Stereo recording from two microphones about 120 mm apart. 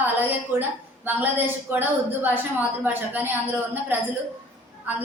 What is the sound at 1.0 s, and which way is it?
A woman's voice, 15° right (ahead or behind).